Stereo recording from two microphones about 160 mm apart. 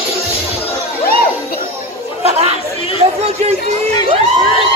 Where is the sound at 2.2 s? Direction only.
40° right (ahead or behind).